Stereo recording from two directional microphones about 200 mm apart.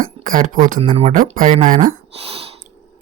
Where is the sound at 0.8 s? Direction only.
30° right (ahead or behind).